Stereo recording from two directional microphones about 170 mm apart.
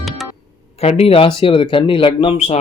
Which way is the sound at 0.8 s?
35° left (ahead or behind).